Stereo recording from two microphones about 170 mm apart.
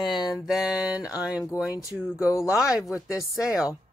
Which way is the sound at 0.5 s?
5° right (ahead or behind).